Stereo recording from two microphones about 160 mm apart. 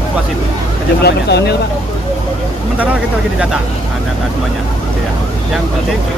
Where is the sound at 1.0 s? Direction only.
90° left.